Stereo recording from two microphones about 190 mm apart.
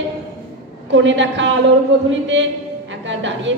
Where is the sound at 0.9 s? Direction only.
75° right (ahead or behind).